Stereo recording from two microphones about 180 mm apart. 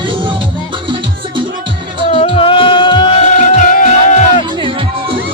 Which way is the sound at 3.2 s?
45° left (ahead or behind).